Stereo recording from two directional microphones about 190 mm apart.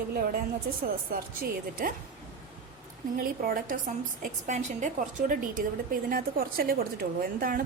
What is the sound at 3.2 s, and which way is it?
A woman's voice, 50° right (ahead or behind).